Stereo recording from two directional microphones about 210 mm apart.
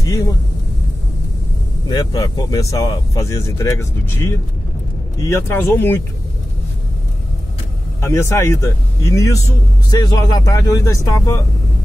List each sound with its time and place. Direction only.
0.0 s speech: 15° left (ahead or behind)
1.9 s speech: 20° left (ahead or behind)
8.0 s speech: 15° left (ahead or behind)